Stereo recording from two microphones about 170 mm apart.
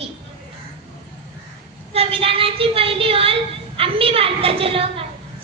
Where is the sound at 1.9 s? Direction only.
35° right (ahead or behind).